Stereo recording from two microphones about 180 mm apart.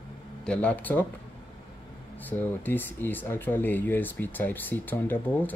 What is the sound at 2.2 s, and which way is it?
Speech, 10° left (ahead or behind).